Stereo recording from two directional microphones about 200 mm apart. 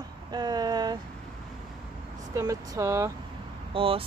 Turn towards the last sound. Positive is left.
turn(degrees=-25)  # may be behind; listen again after turning